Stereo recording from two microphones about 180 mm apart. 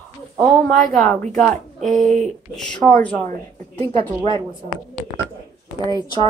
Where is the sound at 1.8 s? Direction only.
40° right (ahead or behind).